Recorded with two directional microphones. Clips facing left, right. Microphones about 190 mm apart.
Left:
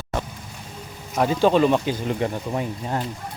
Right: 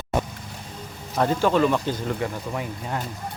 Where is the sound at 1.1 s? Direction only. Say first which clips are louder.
Left 2 dB; 10° left (ahead or behind).